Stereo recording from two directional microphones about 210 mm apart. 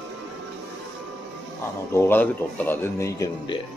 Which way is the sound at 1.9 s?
10° left (ahead or behind).